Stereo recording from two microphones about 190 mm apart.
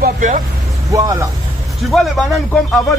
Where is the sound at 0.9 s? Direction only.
15° right (ahead or behind).